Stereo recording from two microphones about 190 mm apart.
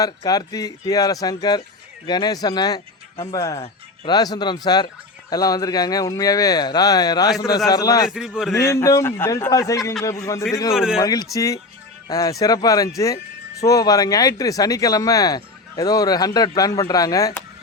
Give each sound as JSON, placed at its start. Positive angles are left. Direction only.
{"t": 0.0, "sound": "a man's voice", "side_deg": 20}